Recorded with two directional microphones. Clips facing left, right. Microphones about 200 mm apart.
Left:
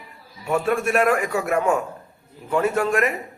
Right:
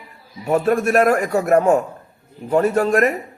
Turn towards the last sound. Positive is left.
turn(degrees=-40)  # may be behind; listen again after turning